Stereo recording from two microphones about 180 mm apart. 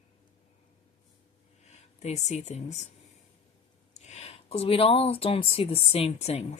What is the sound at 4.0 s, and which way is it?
Speech, 35° left (ahead or behind).